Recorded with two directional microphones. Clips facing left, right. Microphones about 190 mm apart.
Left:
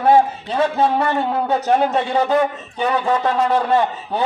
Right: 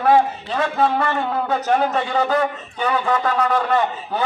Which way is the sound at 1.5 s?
20° left (ahead or behind).